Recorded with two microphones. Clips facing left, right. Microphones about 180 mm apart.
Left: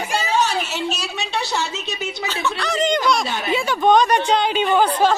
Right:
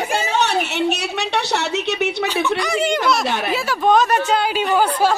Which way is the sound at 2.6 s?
10° right (ahead or behind).